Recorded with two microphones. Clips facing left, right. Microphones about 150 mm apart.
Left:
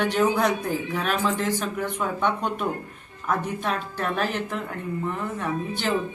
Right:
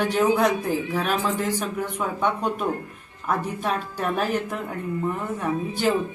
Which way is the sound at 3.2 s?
5° right (ahead or behind).